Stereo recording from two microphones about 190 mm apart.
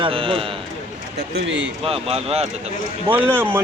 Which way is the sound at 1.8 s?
30° right (ahead or behind).